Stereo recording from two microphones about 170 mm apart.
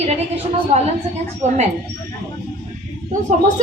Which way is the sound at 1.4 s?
45° right (ahead or behind).